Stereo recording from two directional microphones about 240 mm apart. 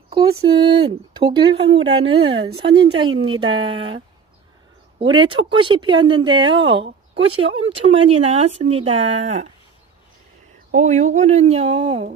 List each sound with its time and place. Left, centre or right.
0.6 s speech: centre
10.7 s speech: right